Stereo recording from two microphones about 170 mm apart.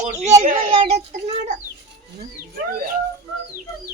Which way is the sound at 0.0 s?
40° right (ahead or behind).